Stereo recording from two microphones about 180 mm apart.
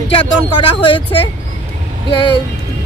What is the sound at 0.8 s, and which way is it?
Speech, 30° left (ahead or behind).